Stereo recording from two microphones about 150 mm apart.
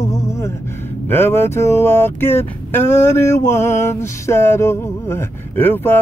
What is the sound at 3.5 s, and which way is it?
Music, 15° left (ahead or behind).